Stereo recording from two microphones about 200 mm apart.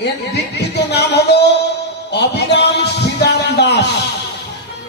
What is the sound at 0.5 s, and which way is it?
Music, 55° left (ahead or behind).